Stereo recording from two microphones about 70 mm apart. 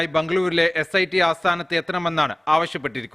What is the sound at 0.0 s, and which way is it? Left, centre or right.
A man's voice, centre.